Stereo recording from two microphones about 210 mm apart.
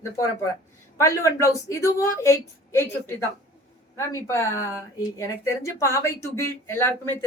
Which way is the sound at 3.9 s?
15° left (ahead or behind).